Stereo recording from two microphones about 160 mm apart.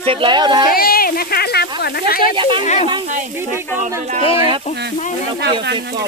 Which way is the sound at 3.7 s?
50° right (ahead or behind).